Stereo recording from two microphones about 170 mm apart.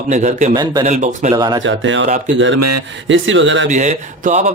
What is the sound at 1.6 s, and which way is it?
Speech, 90° right.